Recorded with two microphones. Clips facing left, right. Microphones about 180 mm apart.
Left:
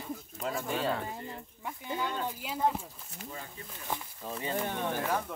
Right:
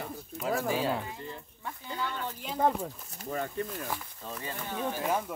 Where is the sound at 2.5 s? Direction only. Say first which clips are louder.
Right 4 dB; 55° right (ahead or behind).